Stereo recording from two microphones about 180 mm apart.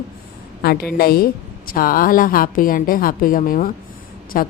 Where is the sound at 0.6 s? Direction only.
60° left (ahead or behind).